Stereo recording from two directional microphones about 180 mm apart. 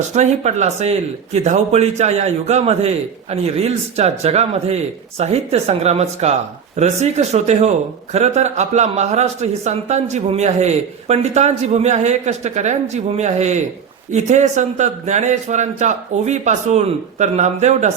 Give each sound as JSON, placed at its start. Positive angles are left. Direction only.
{"t": 0.1, "sound": "speech", "side_deg": -40}